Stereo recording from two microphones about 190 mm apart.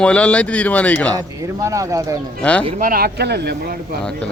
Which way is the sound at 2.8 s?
50° right (ahead or behind).